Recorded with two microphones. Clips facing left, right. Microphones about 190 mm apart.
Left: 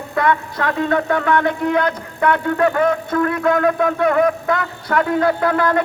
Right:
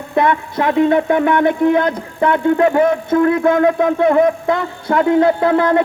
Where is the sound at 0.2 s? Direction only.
20° right (ahead or behind).